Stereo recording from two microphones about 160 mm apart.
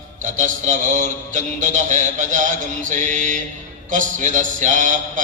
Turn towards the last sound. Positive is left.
turn(degrees=-50)  # may be behind; listen again after turning